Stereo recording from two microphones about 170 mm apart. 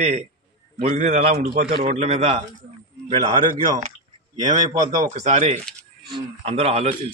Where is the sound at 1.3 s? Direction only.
60° right (ahead or behind).